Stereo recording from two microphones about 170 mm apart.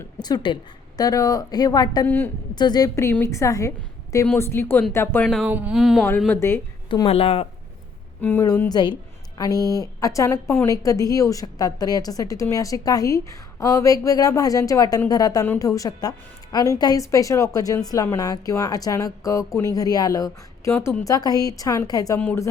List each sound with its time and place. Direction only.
0.2 s a woman's voice: 25° left (ahead or behind)
2.0 s speech: 10° left (ahead or behind)
2.6 s speech: 25° left (ahead or behind); by 6.1 s centre (ahead or behind)
6.1 s speech: 10° left (ahead or behind)
7.1 s speech: 35° left (ahead or behind)
8.2 s speech: 10° left (ahead or behind)
8.7 s a woman's voice: 25° left (ahead or behind)
9.6 s speech: 20° right (ahead or behind)
9.8 s a woman's voice: 20° left (ahead or behind)
22.2 s speech: 10° left (ahead or behind)